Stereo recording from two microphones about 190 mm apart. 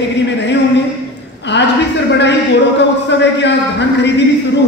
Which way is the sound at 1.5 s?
65° left (ahead or behind).